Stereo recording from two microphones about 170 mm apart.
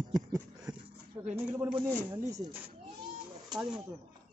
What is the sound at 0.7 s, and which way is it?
Dog, 25° right (ahead or behind).